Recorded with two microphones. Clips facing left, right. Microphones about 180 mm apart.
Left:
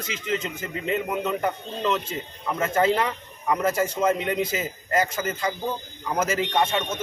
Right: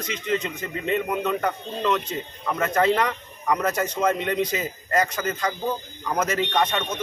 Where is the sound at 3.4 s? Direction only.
5° left (ahead or behind).